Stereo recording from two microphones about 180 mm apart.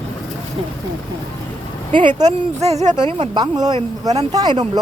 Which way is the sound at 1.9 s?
25° right (ahead or behind).